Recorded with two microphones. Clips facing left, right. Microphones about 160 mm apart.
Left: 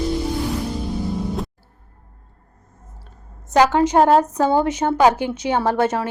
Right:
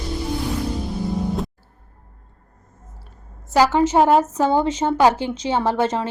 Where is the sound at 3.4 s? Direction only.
20° left (ahead or behind).